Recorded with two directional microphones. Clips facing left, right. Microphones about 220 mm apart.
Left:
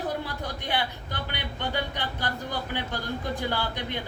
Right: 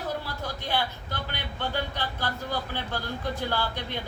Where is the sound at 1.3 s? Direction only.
15° left (ahead or behind).